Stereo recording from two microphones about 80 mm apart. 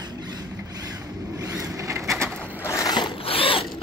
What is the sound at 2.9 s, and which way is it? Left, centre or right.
Zipper, left.